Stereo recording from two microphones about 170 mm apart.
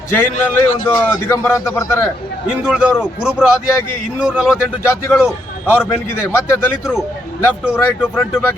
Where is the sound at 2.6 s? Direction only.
5° right (ahead or behind).